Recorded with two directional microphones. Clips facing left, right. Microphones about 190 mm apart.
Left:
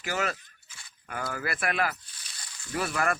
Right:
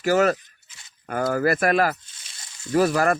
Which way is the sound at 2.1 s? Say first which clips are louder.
Right 1 dB; 25° right (ahead or behind).